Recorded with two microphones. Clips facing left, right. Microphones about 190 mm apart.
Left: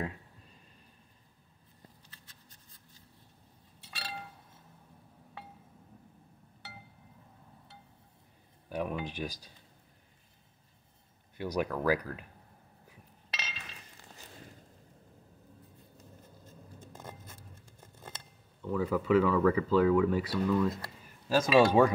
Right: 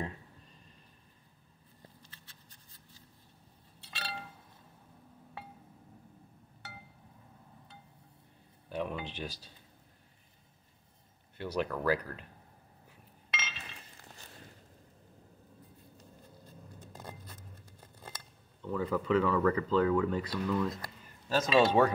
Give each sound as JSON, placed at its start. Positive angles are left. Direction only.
{"t": 8.6, "sound": "speech", "side_deg": 10}
{"t": 11.3, "sound": "speech", "side_deg": 10}
{"t": 13.3, "sound": "chink", "side_deg": 35}
{"t": 18.6, "sound": "speech", "side_deg": 10}